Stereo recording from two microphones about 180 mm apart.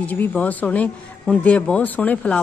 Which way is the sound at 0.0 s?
10° left (ahead or behind).